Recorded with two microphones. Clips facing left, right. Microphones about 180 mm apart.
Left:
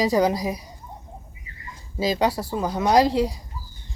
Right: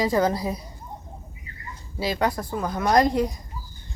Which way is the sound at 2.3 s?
5° left (ahead or behind).